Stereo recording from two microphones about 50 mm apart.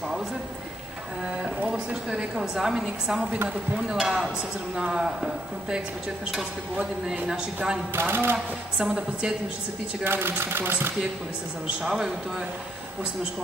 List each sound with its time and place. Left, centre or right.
1.2 s speech: centre
7.2 s speech: centre
7.9 s speech: right
8.7 s speech: centre
10.0 s speech: right
11.6 s speech: centre